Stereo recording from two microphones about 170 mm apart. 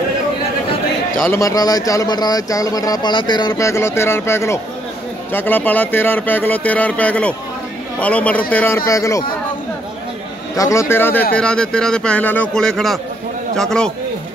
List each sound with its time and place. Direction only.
1.2 s speech: 15° left (ahead or behind)
10.5 s a man's voice: 20° left (ahead or behind)